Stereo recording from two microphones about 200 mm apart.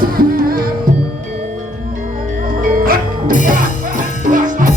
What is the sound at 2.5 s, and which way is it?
Music, 45° right (ahead or behind).